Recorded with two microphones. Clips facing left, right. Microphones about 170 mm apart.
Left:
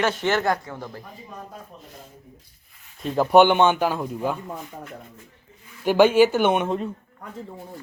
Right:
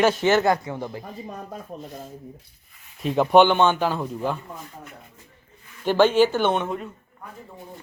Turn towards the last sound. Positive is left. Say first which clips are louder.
# left 4 dB
turn(degrees=30)  # may be behind; listen again after turning